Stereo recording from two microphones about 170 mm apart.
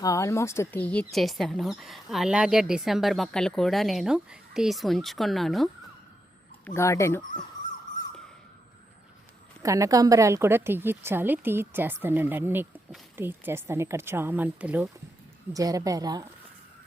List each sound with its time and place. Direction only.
0.0 s speech: 20° left (ahead or behind); by 5.6 s centre (ahead or behind)
6.7 s speech: 15° left (ahead or behind)
9.6 s a woman's voice: 20° right (ahead or behind)
15.5 s a woman's voice: 20° right (ahead or behind)